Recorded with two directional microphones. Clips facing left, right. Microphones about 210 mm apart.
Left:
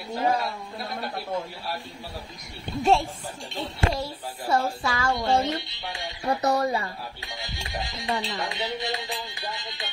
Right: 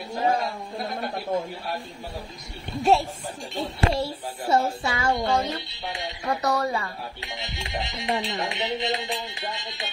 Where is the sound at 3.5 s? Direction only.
25° right (ahead or behind).